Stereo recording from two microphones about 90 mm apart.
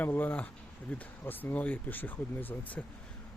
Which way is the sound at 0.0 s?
20° left (ahead or behind).